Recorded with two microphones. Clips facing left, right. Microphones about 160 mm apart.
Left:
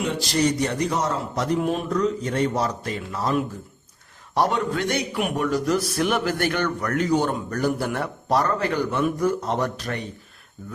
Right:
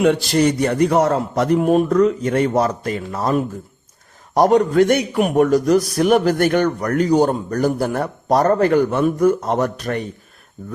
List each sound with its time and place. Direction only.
0.0 s a man's voice: 65° right (ahead or behind)